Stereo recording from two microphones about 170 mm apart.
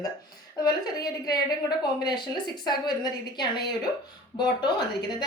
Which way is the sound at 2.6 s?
25° left (ahead or behind).